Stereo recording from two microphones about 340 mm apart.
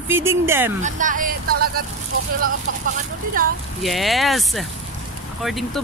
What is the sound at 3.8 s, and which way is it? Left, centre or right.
Speech, centre.